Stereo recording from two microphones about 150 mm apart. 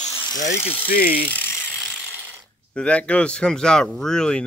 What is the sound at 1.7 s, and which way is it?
Ratchet, centre (ahead or behind).